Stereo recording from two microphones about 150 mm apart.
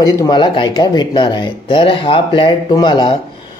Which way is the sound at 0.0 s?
25° left (ahead or behind).